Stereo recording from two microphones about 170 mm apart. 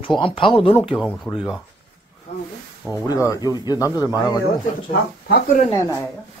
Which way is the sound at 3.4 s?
20° right (ahead or behind).